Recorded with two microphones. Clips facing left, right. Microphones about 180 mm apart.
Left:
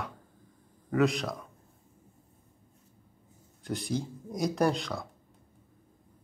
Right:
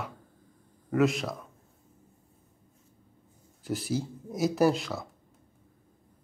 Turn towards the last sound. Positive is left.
turn(degrees=-5)  # may be behind; listen again after turning